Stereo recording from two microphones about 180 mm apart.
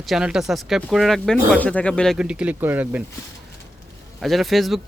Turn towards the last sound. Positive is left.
turn(degrees=0)  # may be behind; listen again after turning